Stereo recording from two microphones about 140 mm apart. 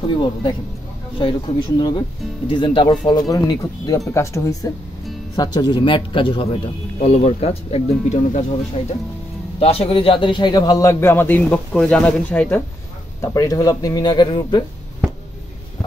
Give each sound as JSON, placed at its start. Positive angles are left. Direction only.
{"t": 0.1, "sound": "speech", "side_deg": 35}
{"t": 1.8, "sound": "a man's voice", "side_deg": 30}
{"t": 9.6, "sound": "a man's voice", "side_deg": 45}